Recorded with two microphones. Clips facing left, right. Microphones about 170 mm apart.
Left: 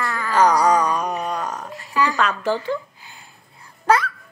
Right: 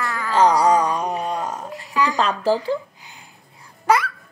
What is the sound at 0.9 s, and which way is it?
Speech, 25° right (ahead or behind).